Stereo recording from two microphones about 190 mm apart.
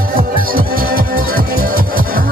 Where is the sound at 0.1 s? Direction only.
50° right (ahead or behind).